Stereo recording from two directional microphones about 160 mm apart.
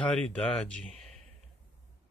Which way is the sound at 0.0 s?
5° left (ahead or behind).